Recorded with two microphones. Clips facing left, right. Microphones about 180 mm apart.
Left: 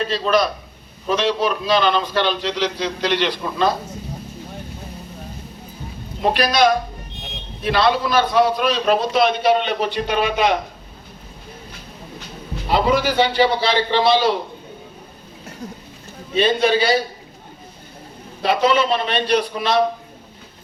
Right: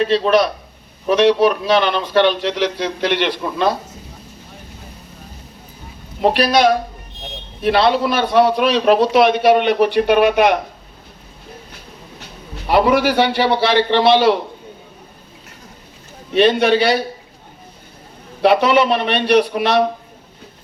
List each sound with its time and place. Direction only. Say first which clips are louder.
0.0 s a man's voice: right 4 dB; 65° right (ahead or behind)
6.2 s a man's voice: right 3 dB; 65° right (ahead or behind)
12.6 s a man's voice: right 4 dB; 60° right (ahead or behind)
16.3 s a man's voice: right 4 dB; 65° right (ahead or behind)
18.4 s a man's voice: right 4 dB; 65° right (ahead or behind)